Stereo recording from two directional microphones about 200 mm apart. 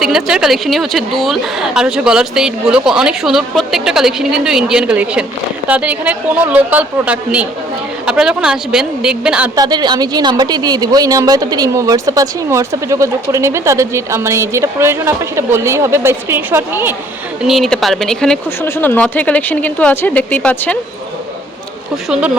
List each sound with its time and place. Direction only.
0.0 s a woman's voice: 5° right (ahead or behind)
9.6 s a woman's voice: 20° right (ahead or behind)
17.4 s speech: centre (ahead or behind)